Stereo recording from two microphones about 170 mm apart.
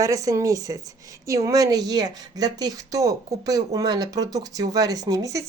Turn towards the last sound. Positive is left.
turn(degrees=-20)  # may be behind; listen again after turning